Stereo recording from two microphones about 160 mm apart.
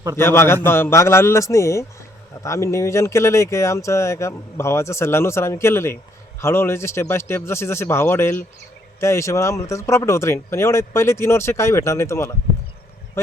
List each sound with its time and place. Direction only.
0.2 s speech: 15° left (ahead or behind)